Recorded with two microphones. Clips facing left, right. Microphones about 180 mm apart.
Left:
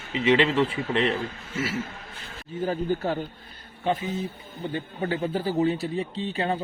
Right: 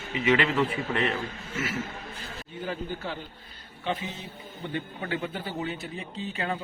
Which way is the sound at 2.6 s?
45° left (ahead or behind).